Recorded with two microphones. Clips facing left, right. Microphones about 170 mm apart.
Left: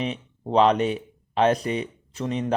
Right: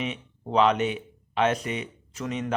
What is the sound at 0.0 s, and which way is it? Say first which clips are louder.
Speech: left 3 dB; 35° left (ahead or behind).